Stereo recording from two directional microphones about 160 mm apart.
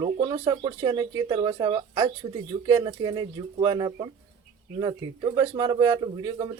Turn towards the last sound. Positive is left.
turn(degrees=-25)  # may be behind; listen again after turning